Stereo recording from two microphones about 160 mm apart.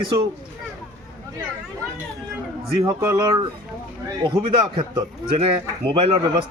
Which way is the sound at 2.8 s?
20° right (ahead or behind).